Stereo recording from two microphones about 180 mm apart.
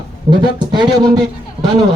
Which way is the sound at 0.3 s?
25° right (ahead or behind).